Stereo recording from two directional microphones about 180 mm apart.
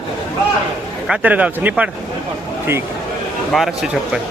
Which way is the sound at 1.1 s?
10° right (ahead or behind).